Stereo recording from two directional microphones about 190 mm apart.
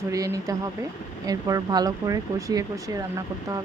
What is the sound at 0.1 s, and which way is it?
Speech, 15° right (ahead or behind).